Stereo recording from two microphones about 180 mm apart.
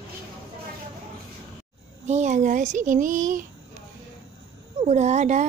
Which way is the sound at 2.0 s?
40° right (ahead or behind).